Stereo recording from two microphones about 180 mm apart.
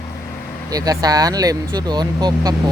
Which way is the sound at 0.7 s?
20° right (ahead or behind).